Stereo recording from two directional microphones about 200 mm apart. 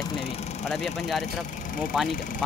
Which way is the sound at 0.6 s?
Centre (ahead or behind).